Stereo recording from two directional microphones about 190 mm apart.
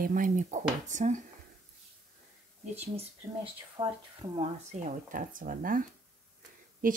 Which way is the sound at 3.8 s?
20° right (ahead or behind).